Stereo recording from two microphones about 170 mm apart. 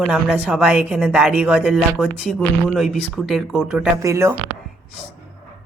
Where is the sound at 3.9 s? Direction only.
15° right (ahead or behind).